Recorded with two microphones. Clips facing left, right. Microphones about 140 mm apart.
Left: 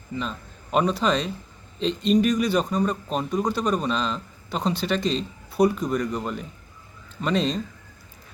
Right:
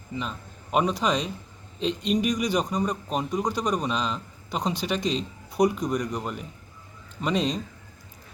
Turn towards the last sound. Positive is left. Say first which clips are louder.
# left 2 dB
turn(degrees=-15)  # may be behind; listen again after turning